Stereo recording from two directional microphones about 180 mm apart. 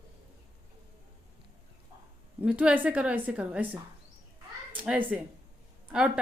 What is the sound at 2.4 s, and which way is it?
A woman's voice, 5° right (ahead or behind).